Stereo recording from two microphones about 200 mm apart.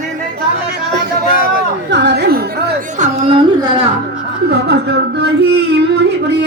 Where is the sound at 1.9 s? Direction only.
60° right (ahead or behind).